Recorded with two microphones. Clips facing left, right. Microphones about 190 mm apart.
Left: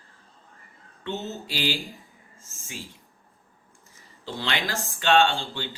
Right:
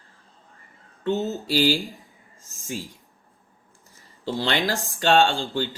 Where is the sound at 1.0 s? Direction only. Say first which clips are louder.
Right 7 dB; 40° right (ahead or behind).